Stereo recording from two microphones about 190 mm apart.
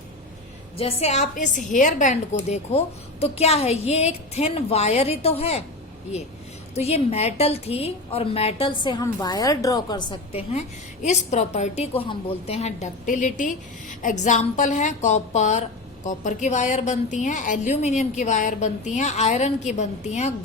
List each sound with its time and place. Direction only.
0.8 s a woman's voice: 30° left (ahead or behind)
6.7 s a woman's voice: 35° left (ahead or behind)